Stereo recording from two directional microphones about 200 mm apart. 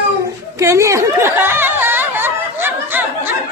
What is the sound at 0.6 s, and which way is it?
Chatter, 15° right (ahead or behind).